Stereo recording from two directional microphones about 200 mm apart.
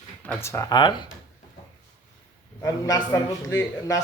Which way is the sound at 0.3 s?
15° left (ahead or behind).